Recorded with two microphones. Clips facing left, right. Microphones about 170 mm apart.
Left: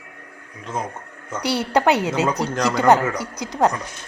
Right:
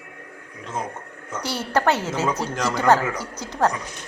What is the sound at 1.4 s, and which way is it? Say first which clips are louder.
A woman's voice: left 3 dB; 15° left (ahead or behind).